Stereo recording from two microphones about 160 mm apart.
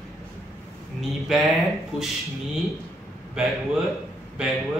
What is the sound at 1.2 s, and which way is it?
Speech, centre (ahead or behind).